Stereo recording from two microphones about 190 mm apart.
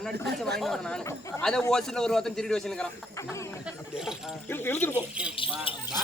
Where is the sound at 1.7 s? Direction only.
5° left (ahead or behind).